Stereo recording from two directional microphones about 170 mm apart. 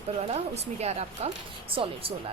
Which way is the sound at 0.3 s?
40° right (ahead or behind).